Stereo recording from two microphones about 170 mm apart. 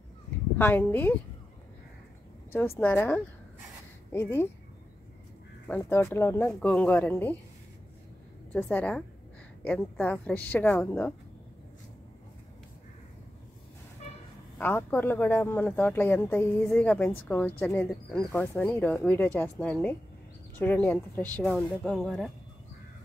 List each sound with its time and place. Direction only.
0.6 s speech: 10° left (ahead or behind)
2.8 s speech: 10° left (ahead or behind)
5.7 s speech: 15° left (ahead or behind)
8.5 s speech: 10° left (ahead or behind)
14.6 s speech: 10° left (ahead or behind)